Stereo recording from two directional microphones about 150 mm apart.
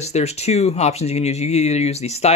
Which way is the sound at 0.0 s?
45° left (ahead or behind).